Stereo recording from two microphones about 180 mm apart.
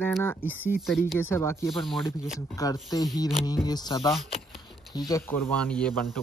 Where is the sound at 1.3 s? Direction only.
15° left (ahead or behind).